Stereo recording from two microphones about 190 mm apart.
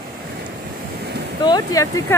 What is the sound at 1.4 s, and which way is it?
Speech, 20° left (ahead or behind).